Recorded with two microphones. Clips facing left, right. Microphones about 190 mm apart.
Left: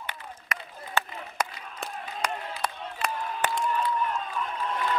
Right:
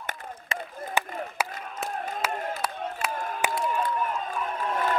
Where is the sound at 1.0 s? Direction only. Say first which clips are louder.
Even; 15° right (ahead or behind).